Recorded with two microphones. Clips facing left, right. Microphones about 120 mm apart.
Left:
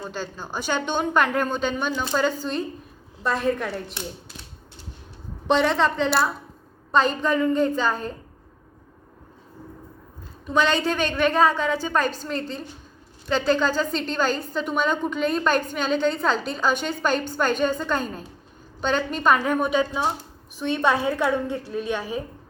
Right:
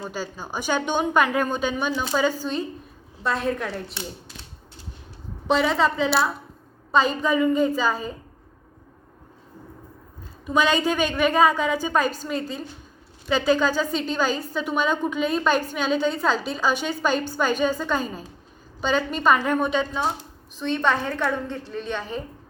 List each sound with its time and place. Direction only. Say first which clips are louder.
0.0 s a woman's voice: right 1 dB; 10° right (ahead or behind)
5.5 s a woman's voice: even; 5° right (ahead or behind)
10.4 s a woman's voice: right 1 dB; 10° right (ahead or behind); by 22.2 s 10° left (ahead or behind)